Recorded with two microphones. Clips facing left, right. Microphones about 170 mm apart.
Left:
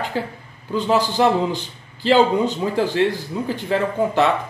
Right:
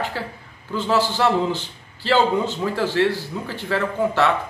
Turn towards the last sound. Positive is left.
turn(degrees=15)  # may be behind; listen again after turning